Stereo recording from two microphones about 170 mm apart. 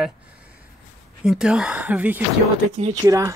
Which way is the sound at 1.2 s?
5° right (ahead or behind).